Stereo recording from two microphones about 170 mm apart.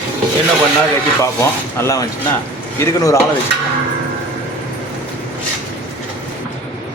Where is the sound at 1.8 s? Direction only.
15° left (ahead or behind).